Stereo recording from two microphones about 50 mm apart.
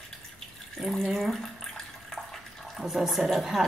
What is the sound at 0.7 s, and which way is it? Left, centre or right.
Speech, centre.